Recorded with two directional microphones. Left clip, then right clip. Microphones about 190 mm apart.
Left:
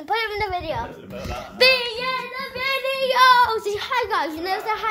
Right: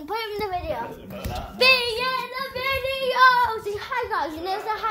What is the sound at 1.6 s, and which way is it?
Speech, 15° left (ahead or behind).